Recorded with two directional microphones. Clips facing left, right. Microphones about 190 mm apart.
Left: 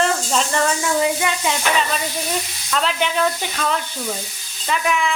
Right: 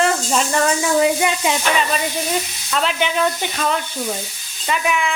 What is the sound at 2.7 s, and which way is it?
A woman's voice, 5° right (ahead or behind).